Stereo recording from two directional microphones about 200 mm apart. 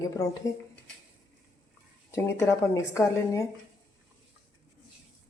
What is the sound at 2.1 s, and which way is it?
A woman's voice, 15° left (ahead or behind).